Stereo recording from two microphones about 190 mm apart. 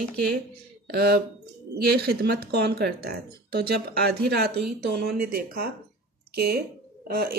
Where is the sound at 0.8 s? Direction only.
55° right (ahead or behind).